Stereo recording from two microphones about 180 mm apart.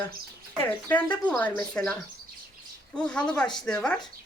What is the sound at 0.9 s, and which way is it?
Speech, 10° left (ahead or behind).